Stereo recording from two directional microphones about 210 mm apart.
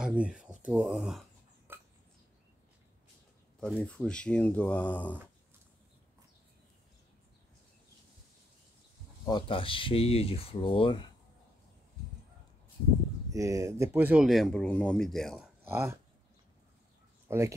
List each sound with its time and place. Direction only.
0.0 s a sound: 5° right (ahead or behind)
0.7 s speech: centre (ahead or behind)
1.7 s burping: 10° right (ahead or behind)
3.6 s speech: 5° left (ahead or behind)
9.2 s speech: 20° left (ahead or behind)
13.3 s speech: 15° right (ahead or behind)
17.3 s speech: 15° right (ahead or behind)